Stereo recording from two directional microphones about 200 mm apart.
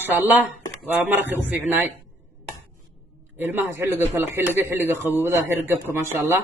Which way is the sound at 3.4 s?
10° right (ahead or behind).